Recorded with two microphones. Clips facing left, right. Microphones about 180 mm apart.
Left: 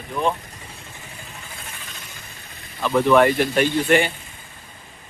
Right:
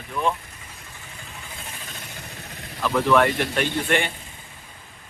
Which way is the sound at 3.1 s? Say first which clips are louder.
Left 4 dB; 5° left (ahead or behind).